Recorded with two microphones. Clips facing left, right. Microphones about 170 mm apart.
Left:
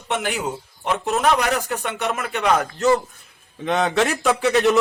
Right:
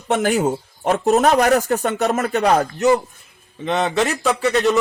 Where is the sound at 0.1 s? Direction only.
45° right (ahead or behind).